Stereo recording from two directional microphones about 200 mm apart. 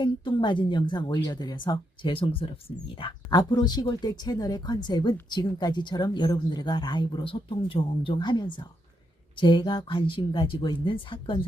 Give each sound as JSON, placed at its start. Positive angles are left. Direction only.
{"t": 0.0, "sound": "speech", "side_deg": 25}